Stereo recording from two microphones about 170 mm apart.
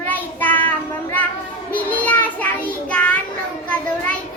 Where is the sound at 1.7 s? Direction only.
10° left (ahead or behind).